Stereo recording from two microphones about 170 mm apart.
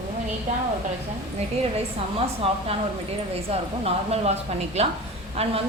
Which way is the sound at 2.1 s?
35° right (ahead or behind).